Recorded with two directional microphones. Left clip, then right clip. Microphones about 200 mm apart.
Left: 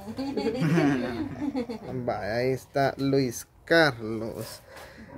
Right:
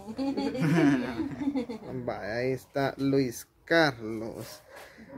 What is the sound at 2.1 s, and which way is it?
Speech, 5° left (ahead or behind).